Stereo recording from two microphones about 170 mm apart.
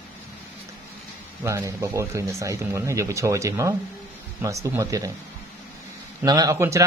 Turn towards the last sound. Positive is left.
turn(degrees=-20)  # may be behind; listen again after turning